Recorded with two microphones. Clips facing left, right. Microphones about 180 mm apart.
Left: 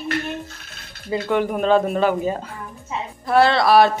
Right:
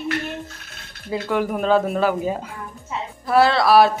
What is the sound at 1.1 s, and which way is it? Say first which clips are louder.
A woman's voice: left 2 dB; 5° right (ahead or behind).